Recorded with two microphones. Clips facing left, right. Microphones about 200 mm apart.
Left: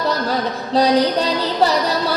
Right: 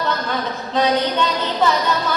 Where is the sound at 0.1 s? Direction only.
35° left (ahead or behind).